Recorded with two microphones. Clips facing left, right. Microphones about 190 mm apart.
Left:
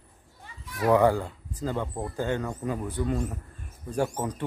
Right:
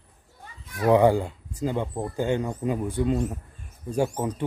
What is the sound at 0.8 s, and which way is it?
Speech, 20° right (ahead or behind).